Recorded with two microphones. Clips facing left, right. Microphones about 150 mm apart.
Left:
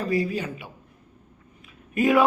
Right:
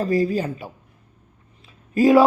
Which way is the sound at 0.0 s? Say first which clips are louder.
Right 5 dB; 35° right (ahead or behind).